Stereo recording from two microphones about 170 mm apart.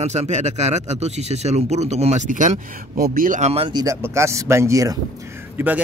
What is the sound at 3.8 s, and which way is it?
Speech, 20° right (ahead or behind).